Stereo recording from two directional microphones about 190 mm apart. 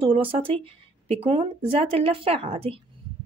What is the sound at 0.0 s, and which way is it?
Speech, 30° right (ahead or behind).